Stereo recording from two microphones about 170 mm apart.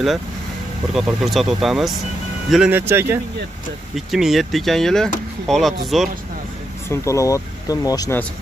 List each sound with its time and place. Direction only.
0.9 s speech: centre (ahead or behind)
3.9 s speech: centre (ahead or behind)
6.9 s speech: 20° left (ahead or behind)